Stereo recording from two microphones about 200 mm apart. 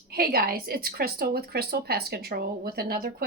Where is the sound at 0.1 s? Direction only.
50° right (ahead or behind).